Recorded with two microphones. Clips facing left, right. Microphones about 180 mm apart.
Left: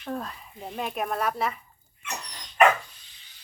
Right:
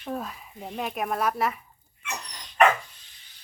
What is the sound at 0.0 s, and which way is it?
Speech, 5° right (ahead or behind).